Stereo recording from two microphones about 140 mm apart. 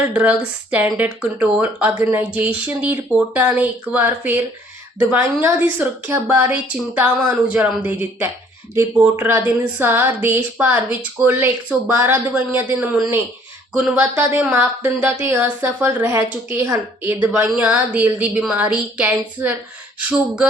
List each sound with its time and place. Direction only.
0.1 s speech: 10° right (ahead or behind)
14.3 s speech: 15° right (ahead or behind)